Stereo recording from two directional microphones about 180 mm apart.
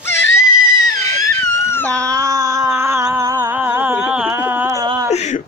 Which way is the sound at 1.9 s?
15° right (ahead or behind).